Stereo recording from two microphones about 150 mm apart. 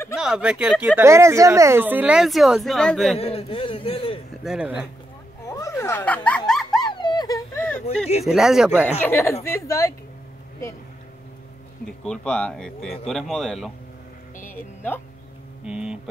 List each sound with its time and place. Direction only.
0.1 s speech: 5° right (ahead or behind)
3.2 s a man's voice: 40° left (ahead or behind)
4.3 s speech: centre (ahead or behind)
5.4 s a sound: 20° left (ahead or behind); by 6.8 s centre (ahead or behind)
6.9 s a sound: 30° left (ahead or behind)
8.2 s speech: centre (ahead or behind)
9.0 s a woman's voice: 15° left (ahead or behind)
11.8 s speech: 5° left (ahead or behind)
14.5 s speech: 15° left (ahead or behind)
15.6 s speech: 5° right (ahead or behind)